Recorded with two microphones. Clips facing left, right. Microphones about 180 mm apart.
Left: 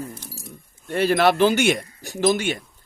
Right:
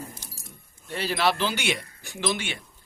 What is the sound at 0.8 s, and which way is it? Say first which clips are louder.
A man's voice: left 7 dB; 55° left (ahead or behind).